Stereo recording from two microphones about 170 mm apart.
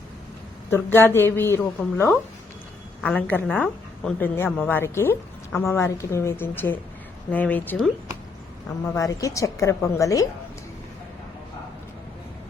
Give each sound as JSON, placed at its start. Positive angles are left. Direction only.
{"t": 0.7, "sound": "a woman's voice", "side_deg": 15}
{"t": 8.9, "sound": "a woman's voice", "side_deg": 20}